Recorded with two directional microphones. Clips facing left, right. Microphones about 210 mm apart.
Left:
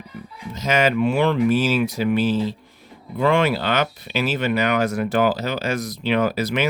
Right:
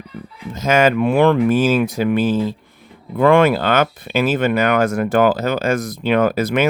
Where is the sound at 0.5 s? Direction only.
50° right (ahead or behind).